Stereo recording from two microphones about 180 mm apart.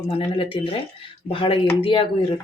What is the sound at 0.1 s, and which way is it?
Speech, 30° left (ahead or behind).